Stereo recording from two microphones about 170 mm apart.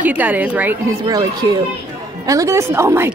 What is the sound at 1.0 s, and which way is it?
A woman's voice, 20° right (ahead or behind).